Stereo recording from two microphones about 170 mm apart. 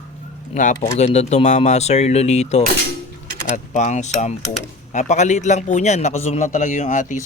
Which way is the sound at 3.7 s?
45° left (ahead or behind).